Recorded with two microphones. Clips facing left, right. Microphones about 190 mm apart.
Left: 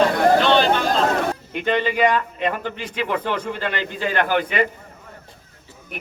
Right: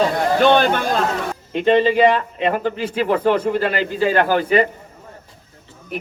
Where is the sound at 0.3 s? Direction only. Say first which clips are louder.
Right 2 dB; 50° right (ahead or behind).